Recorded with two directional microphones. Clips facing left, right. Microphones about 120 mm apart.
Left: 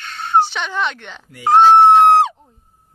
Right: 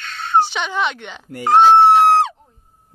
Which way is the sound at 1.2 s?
50° right (ahead or behind).